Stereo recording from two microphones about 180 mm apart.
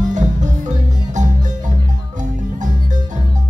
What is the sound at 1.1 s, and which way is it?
Music, 45° right (ahead or behind).